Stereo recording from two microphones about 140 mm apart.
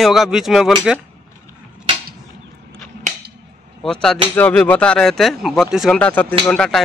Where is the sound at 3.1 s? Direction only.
65° right (ahead or behind).